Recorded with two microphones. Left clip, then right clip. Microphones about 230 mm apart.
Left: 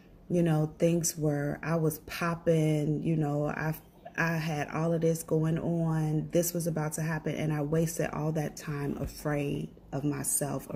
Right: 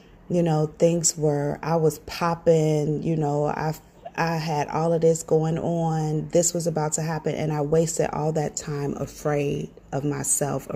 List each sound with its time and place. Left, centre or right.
0.3 s speech: centre